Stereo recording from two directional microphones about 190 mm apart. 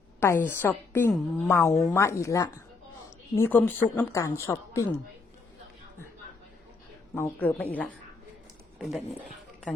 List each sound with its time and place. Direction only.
0.2 s speech: 10° left (ahead or behind)
7.2 s speech: 10° left (ahead or behind)